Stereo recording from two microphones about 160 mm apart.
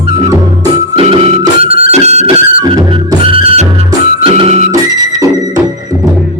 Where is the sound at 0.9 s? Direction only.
35° right (ahead or behind).